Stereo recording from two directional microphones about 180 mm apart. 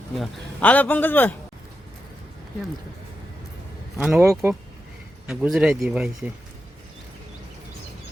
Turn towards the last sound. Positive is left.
turn(degrees=-5)  # may be behind; listen again after turning